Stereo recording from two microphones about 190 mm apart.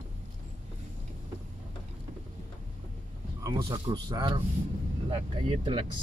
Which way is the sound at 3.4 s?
25° right (ahead or behind).